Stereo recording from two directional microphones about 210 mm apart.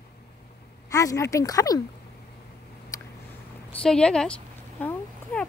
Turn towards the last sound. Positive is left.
turn(degrees=10)  # may be behind; listen again after turning